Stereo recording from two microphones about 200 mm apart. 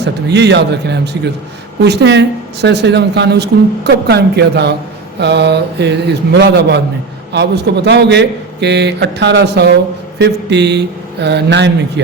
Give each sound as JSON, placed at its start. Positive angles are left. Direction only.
{"t": 0.0, "sound": "speech", "side_deg": -60}